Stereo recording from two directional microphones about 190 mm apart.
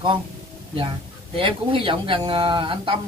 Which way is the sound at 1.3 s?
25° right (ahead or behind).